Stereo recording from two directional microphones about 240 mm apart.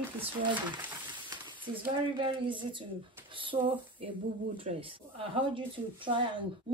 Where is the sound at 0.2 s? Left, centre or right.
Centre.